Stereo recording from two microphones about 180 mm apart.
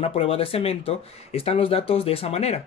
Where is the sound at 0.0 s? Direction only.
35° left (ahead or behind).